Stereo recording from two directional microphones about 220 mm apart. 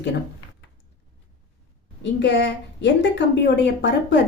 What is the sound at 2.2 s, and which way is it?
A woman's voice, 50° left (ahead or behind).